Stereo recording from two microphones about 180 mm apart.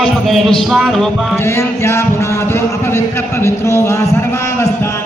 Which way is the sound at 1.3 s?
15° left (ahead or behind).